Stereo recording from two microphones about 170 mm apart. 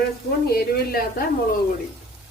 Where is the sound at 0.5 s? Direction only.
60° left (ahead or behind).